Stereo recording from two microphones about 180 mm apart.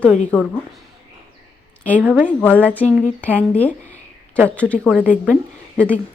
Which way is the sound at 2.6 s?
10° left (ahead or behind).